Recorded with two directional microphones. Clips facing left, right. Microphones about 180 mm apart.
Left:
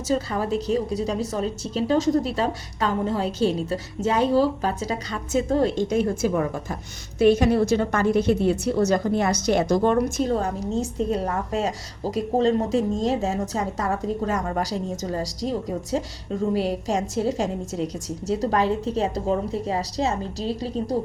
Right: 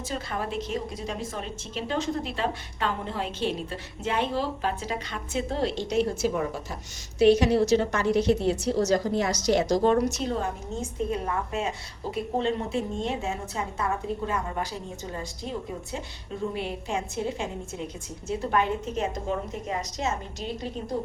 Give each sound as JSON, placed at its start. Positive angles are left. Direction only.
{"t": 0.1, "sound": "a woman's voice", "side_deg": 35}